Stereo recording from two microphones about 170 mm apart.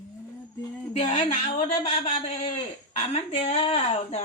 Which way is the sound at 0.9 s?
35° left (ahead or behind).